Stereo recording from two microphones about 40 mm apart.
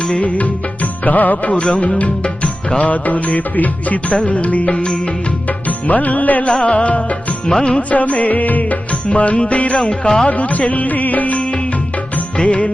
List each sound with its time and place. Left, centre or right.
0.0 s music: left
6.6 s music: left
7.4 s music: left
7.8 s music: left
9.7 s music: left
10.2 s music: left